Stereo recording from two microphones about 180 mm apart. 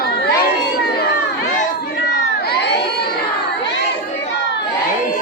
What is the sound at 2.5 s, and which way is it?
Crowd, 65° left (ahead or behind).